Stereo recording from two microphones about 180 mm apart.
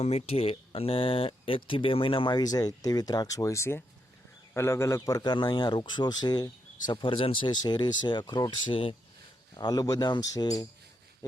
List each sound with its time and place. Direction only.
0.0 s a man's voice: 35° left (ahead or behind); by 10.7 s 20° left (ahead or behind)